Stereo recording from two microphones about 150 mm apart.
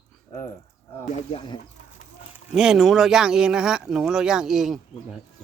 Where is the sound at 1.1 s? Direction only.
35° left (ahead or behind).